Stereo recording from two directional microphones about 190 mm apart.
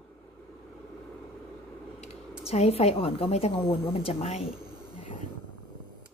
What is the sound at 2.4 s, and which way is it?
A woman's voice, 30° left (ahead or behind).